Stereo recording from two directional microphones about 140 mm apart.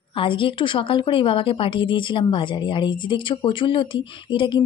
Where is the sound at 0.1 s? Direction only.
35° left (ahead or behind).